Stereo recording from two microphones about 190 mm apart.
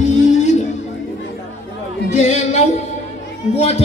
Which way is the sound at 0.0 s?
40° left (ahead or behind).